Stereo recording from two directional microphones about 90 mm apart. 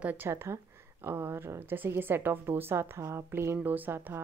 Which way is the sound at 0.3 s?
30° right (ahead or behind).